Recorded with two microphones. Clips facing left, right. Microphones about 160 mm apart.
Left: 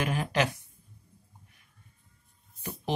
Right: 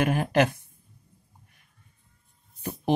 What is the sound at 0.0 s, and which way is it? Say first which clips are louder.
Speech: right 6 dB; 55° right (ahead or behind).